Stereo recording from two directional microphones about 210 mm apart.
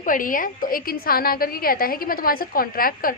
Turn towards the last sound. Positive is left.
turn(degrees=45)  # may be behind; listen again after turning